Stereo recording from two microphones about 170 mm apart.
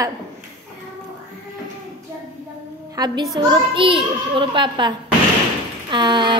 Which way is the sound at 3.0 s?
20° right (ahead or behind).